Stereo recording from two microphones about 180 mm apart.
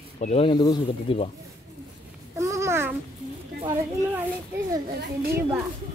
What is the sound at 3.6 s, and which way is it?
Speech, 10° right (ahead or behind).